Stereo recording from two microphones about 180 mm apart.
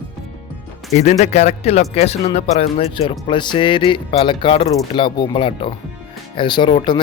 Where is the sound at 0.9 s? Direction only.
40° left (ahead or behind).